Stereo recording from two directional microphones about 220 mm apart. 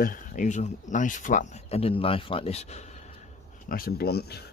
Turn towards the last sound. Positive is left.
turn(degrees=45)  # may be behind; listen again after turning